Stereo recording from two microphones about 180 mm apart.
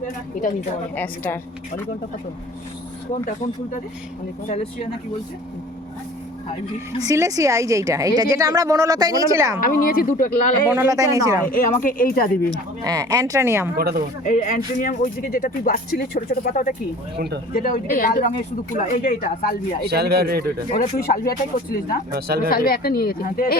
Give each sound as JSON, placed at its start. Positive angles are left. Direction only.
{"t": 0.9, "sound": "a woman's voice", "side_deg": 10}
{"t": 7.0, "sound": "a woman's voice", "side_deg": -20}
{"t": 9.6, "sound": "speech", "side_deg": 50}
{"t": 10.7, "sound": "a woman's voice", "side_deg": -15}
{"t": 11.4, "sound": "speech", "side_deg": 50}
{"t": 12.8, "sound": "a woman's voice", "side_deg": -20}
{"t": 13.7, "sound": "speech", "side_deg": -60}
{"t": 14.3, "sound": "speech", "side_deg": 45}
{"t": 17.2, "sound": "speech", "side_deg": -65}
{"t": 17.5, "sound": "speech", "side_deg": 55}
{"t": 19.9, "sound": "speech", "side_deg": -60}
{"t": 20.7, "sound": "speech", "side_deg": 55}